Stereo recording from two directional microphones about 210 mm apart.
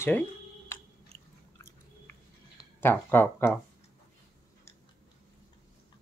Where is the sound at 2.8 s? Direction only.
10° left (ahead or behind).